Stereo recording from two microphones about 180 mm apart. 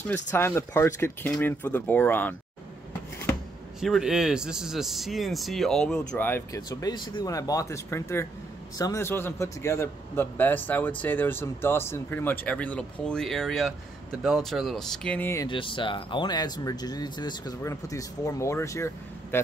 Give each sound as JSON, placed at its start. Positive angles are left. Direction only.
{"t": 0.3, "sound": "a man's voice", "side_deg": 15}
{"t": 3.8, "sound": "a man's voice", "side_deg": 0}
{"t": 15.4, "sound": "a man's voice", "side_deg": 25}